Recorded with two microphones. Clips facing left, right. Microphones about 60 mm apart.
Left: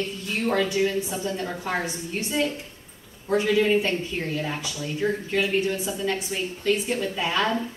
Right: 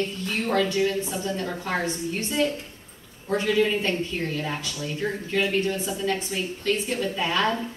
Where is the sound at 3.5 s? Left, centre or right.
Centre.